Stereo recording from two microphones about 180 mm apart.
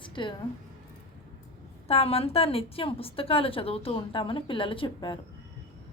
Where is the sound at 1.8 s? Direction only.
35° left (ahead or behind).